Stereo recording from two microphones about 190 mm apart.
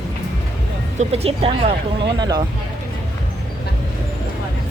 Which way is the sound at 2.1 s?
20° right (ahead or behind).